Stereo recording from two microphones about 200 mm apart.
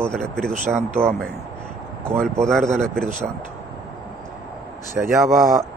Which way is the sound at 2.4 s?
Centre (ahead or behind).